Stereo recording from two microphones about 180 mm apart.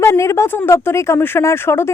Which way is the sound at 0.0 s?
15° left (ahead or behind).